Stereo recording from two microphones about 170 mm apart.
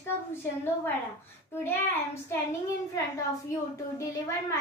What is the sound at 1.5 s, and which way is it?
A child's voice, 15° left (ahead or behind).